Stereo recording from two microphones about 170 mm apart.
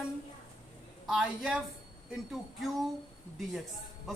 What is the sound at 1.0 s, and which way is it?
Speech, 5° right (ahead or behind).